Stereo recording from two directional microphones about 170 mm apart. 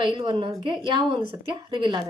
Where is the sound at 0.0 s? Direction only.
30° right (ahead or behind).